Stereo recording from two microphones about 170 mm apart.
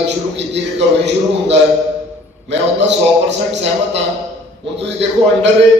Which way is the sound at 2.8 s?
90° right.